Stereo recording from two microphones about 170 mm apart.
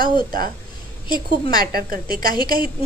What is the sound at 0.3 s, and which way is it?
Speech, 55° right (ahead or behind).